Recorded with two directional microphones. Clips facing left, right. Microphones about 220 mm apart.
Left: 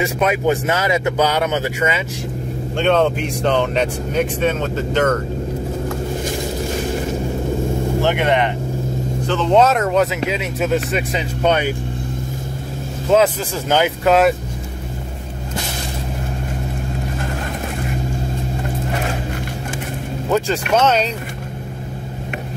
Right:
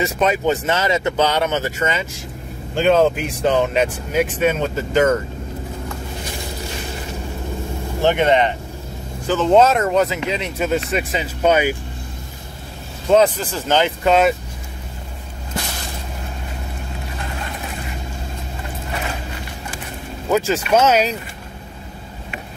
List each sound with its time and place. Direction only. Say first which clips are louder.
0.0 s speech: left 1 dB; 10° left (ahead or behind)
2.7 s speech: right 1 dB; 5° right (ahead or behind)
8.0 s speech: right 3 dB; 20° right (ahead or behind)
9.3 s speech: right 1 dB; 5° right (ahead or behind)
13.1 s speech: even; 5° left (ahead or behind)
20.2 s speech: right 1 dB; 5° right (ahead or behind)